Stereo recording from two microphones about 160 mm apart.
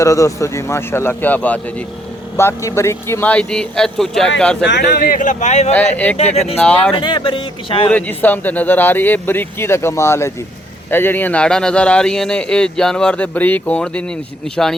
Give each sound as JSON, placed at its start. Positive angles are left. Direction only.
{"t": 0.0, "sound": "speech", "side_deg": 20}
{"t": 4.6, "sound": "speech", "side_deg": 90}
{"t": 5.7, "sound": "speech", "side_deg": 10}
{"t": 6.1, "sound": "speech", "side_deg": 40}
{"t": 6.6, "sound": "speech", "side_deg": 5}
{"t": 6.9, "sound": "speech", "side_deg": 30}
{"t": 7.9, "sound": "speech", "side_deg": 10}